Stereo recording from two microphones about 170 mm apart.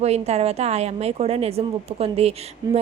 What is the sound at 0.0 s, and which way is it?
A woman's voice, 40° right (ahead or behind).